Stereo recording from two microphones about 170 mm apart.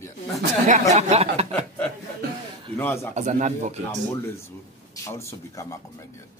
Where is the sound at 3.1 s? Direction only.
45° right (ahead or behind).